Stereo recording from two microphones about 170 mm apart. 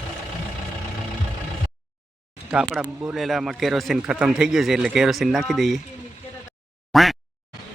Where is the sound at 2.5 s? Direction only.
5° right (ahead or behind).